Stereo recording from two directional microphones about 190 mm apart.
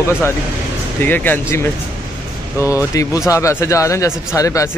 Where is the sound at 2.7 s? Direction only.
15° left (ahead or behind).